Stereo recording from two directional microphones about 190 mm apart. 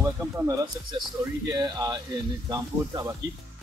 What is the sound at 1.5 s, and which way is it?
A man's voice, 20° right (ahead or behind).